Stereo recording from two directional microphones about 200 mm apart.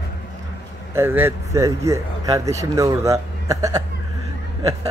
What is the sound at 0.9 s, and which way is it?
Speech, 10° right (ahead or behind).